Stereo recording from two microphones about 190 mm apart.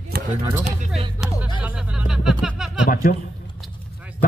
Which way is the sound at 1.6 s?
5° right (ahead or behind).